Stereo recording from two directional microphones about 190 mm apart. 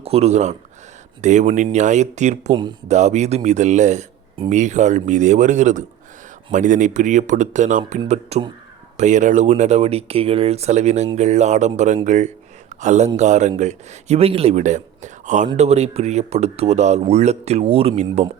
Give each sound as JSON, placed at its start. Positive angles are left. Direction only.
{"t": 0.0, "sound": "speech", "side_deg": -35}